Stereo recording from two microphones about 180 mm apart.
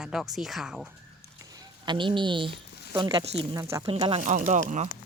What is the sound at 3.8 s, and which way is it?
Speech, 30° right (ahead or behind).